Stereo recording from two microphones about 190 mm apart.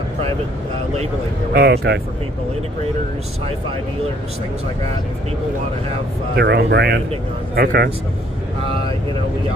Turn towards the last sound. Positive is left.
turn(degrees=-55)  # may be behind; listen again after turning